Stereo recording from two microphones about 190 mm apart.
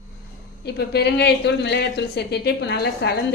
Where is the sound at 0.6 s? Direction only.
60° left (ahead or behind).